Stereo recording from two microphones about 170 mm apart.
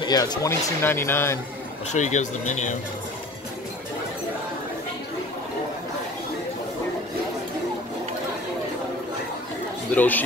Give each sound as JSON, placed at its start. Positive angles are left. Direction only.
{"t": 0.0, "sound": "speech", "side_deg": 25}
{"t": 1.9, "sound": "speech", "side_deg": 45}
{"t": 9.9, "sound": "speech", "side_deg": 10}